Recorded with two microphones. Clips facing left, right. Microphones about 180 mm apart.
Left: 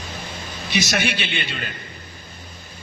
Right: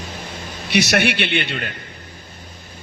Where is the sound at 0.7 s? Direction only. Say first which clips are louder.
Right 5 dB; 65° right (ahead or behind).